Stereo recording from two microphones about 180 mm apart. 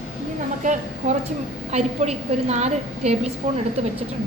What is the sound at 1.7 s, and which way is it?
A woman's voice, 40° right (ahead or behind).